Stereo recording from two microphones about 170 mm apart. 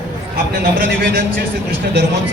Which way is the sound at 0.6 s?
60° right (ahead or behind).